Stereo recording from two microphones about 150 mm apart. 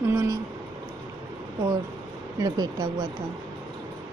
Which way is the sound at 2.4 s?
25° right (ahead or behind).